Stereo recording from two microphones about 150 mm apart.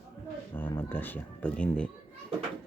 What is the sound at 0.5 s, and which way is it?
Speech, 15° left (ahead or behind).